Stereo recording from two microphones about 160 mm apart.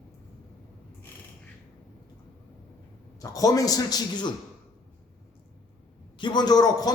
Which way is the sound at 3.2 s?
20° left (ahead or behind).